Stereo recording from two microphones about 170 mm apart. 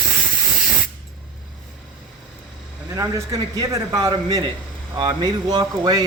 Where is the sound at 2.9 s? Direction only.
20° right (ahead or behind).